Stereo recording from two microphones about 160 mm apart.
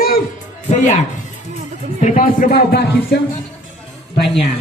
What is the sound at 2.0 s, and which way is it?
Speech, 55° left (ahead or behind).